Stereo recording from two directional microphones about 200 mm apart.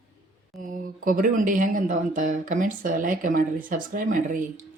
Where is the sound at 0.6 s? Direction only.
40° right (ahead or behind).